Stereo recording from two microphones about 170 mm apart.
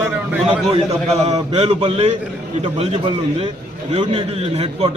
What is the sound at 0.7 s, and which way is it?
A man's voice, 40° right (ahead or behind).